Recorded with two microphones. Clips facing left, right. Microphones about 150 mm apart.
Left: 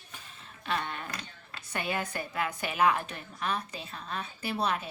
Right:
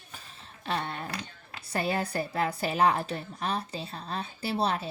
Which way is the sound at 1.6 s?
35° right (ahead or behind).